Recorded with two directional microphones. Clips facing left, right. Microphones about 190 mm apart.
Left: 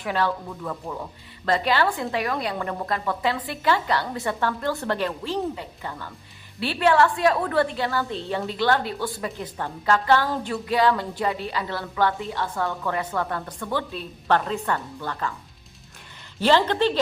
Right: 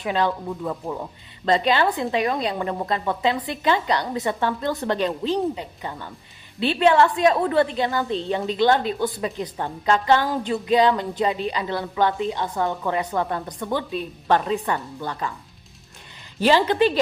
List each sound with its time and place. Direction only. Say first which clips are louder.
0.0 s a woman's voice: right 2 dB; 20° right (ahead or behind)
16.4 s speech: right 2 dB; 15° right (ahead or behind)